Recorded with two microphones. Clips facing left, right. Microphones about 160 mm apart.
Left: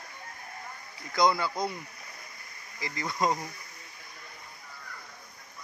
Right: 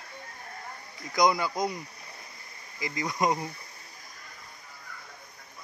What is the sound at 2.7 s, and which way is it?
Bee, 20° right (ahead or behind).